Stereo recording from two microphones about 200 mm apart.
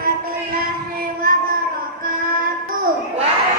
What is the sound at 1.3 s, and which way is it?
Child singing, 45° right (ahead or behind).